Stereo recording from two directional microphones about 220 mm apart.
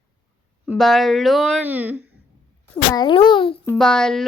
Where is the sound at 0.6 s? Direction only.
Centre (ahead or behind).